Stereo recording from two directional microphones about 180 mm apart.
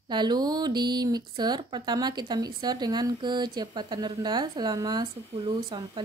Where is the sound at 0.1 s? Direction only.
25° right (ahead or behind).